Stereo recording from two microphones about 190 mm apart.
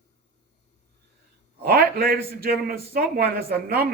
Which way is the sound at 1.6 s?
50° right (ahead or behind).